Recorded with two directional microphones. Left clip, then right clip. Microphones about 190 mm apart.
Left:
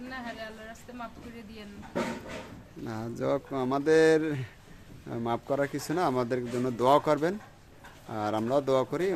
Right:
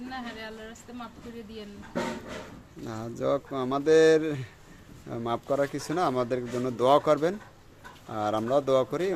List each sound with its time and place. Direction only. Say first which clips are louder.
2.8 s speech: right 2 dB; 10° left (ahead or behind)